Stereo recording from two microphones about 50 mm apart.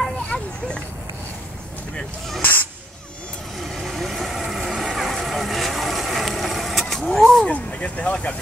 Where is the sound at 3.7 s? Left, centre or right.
Centre.